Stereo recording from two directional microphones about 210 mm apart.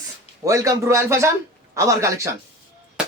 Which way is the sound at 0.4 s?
15° right (ahead or behind).